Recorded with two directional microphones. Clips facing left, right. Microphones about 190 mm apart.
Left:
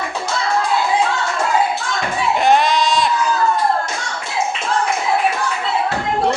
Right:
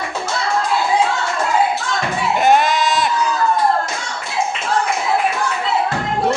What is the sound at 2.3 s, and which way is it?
Sheep, centre (ahead or behind).